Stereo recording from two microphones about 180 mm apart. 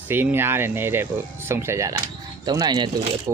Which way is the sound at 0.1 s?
10° right (ahead or behind).